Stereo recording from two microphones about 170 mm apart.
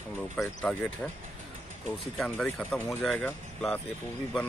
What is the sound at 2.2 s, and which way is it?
Speech, 5° left (ahead or behind).